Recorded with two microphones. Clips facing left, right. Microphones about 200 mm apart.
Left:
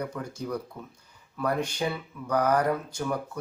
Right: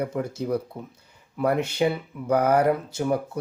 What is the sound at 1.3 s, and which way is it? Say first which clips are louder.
Speech: right 5 dB; 25° right (ahead or behind).